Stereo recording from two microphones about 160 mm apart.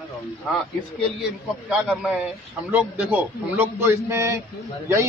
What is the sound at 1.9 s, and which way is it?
A man's voice, 10° right (ahead or behind).